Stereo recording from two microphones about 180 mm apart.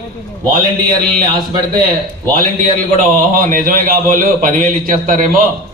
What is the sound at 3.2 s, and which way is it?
A man's voice, 50° right (ahead or behind).